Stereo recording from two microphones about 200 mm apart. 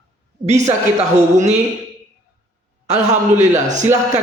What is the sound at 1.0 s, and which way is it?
Speech, 35° right (ahead or behind).